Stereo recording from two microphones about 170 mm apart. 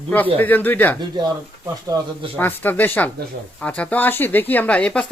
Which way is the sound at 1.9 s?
20° right (ahead or behind).